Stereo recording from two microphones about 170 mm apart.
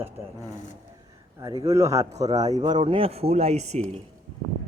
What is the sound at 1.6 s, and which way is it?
Speech, 20° right (ahead or behind).